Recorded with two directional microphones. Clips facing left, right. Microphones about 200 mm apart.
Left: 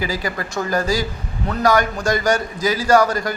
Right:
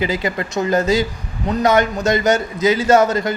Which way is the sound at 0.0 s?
25° right (ahead or behind).